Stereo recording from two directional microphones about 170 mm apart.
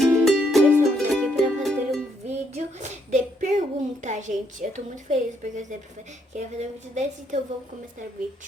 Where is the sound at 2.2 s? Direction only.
40° right (ahead or behind).